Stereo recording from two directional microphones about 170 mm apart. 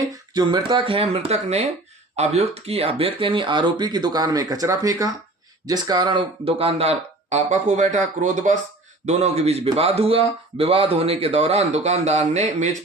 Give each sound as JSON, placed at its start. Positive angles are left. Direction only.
{"t": 0.0, "sound": "speech", "side_deg": -25}